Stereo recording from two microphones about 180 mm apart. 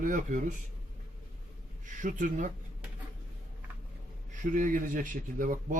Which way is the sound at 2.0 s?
45° right (ahead or behind).